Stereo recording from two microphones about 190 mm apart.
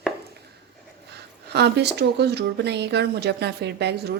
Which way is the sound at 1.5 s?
60° right (ahead or behind).